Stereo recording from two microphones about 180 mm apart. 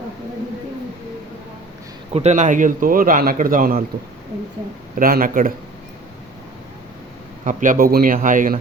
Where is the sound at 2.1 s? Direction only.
40° right (ahead or behind).